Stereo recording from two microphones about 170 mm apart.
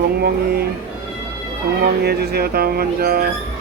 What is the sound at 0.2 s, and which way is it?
Speech, 65° right (ahead or behind).